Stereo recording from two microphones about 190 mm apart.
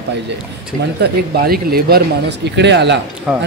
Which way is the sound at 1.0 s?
55° right (ahead or behind).